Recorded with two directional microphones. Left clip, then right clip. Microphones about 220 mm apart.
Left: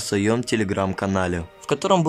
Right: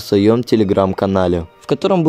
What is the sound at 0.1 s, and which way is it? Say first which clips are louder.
Speech: right 9 dB; 15° right (ahead or behind).